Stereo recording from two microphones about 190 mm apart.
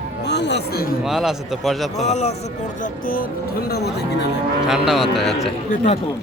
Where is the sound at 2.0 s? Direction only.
35° left (ahead or behind).